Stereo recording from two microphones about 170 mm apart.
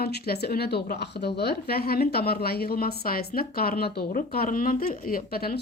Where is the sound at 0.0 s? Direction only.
70° left (ahead or behind).